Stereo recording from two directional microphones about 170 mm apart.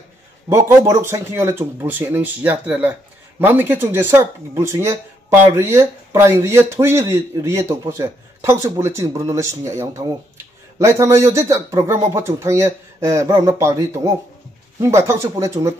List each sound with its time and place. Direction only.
0.7 s speech: 15° right (ahead or behind)